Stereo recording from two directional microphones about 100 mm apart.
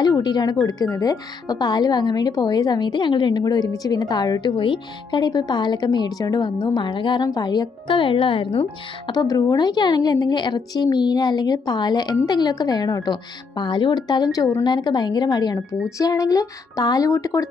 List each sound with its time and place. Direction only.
0.0 s a woman's voice: 45° left (ahead or behind)
9.1 s a woman's voice: 40° left (ahead or behind)